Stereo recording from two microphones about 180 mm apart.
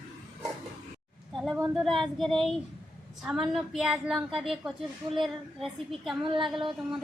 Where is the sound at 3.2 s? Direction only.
Centre (ahead or behind).